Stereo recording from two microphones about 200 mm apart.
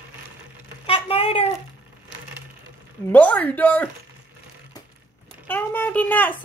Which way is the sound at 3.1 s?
10° left (ahead or behind).